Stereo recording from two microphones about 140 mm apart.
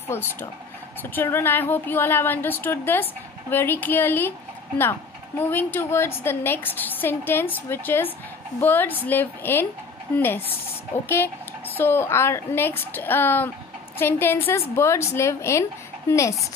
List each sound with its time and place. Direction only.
0.1 s a woman's voice: 15° left (ahead or behind)
5.4 s a woman's voice: 15° left (ahead or behind)
11.7 s a woman's voice: 15° left (ahead or behind)